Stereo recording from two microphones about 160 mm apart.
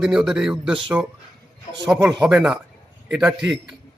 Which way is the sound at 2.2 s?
5° right (ahead or behind).